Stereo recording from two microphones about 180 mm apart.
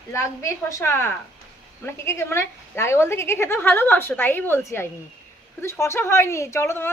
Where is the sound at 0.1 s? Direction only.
15° left (ahead or behind).